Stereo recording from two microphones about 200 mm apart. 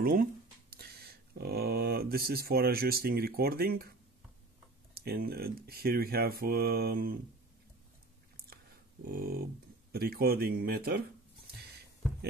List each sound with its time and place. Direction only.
0.0 s speech: 45° right (ahead or behind)
4.9 s speech: 50° right (ahead or behind)
9.0 s speech: 45° right (ahead or behind)